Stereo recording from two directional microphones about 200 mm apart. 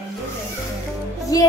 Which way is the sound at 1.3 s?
20° left (ahead or behind).